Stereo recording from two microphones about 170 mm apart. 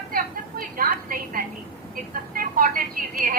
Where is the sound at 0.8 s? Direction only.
55° right (ahead or behind).